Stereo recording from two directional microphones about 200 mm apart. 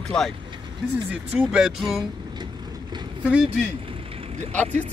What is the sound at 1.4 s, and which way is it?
Speech, 5° right (ahead or behind).